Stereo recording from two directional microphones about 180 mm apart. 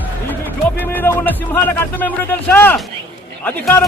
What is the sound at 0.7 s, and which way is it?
Speech, 10° left (ahead or behind).